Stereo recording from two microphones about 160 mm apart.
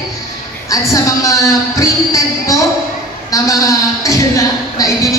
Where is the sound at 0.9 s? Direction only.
20° left (ahead or behind).